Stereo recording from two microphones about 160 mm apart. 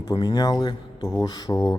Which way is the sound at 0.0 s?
25° left (ahead or behind).